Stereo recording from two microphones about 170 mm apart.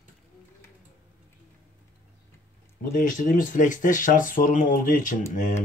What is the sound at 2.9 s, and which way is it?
Speech, 50° left (ahead or behind).